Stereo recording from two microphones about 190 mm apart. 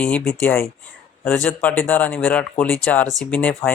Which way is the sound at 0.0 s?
5° left (ahead or behind).